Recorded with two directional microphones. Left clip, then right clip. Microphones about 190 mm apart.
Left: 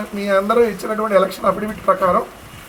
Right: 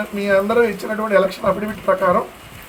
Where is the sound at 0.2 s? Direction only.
5° right (ahead or behind).